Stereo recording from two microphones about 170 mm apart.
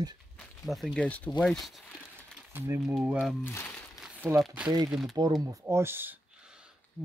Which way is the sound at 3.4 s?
15° left (ahead or behind).